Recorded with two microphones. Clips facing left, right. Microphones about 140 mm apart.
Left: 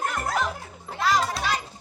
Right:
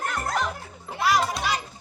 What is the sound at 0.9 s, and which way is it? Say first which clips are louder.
Music: right 1 dB; 10° right (ahead or behind).